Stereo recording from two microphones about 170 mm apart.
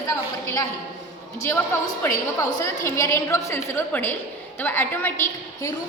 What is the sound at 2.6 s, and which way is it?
A woman's voice, 15° left (ahead or behind).